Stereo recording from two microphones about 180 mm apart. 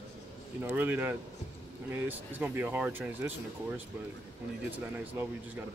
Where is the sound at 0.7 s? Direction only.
10° right (ahead or behind).